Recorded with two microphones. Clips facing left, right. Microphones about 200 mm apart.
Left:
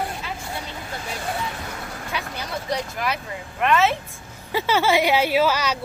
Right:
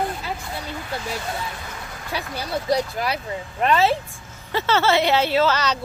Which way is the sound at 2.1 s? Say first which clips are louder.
Right 4 dB; 35° right (ahead or behind).